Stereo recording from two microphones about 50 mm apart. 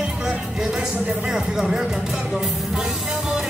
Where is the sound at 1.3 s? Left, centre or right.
Centre.